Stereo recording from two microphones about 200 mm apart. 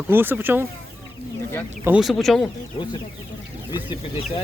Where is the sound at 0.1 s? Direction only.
10° right (ahead or behind).